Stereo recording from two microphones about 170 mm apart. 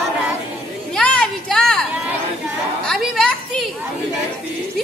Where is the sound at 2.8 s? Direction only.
5° left (ahead or behind).